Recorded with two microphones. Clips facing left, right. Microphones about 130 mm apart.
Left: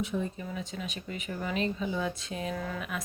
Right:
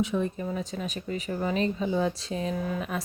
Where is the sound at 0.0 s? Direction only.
90° right.